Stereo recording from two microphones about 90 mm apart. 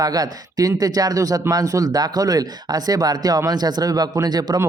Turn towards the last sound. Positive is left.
turn(degrees=-50)  # may be behind; listen again after turning